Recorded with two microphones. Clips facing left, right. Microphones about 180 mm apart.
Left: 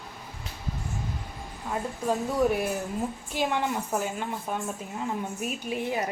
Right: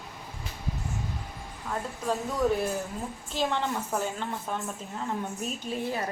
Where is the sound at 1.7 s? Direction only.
15° left (ahead or behind).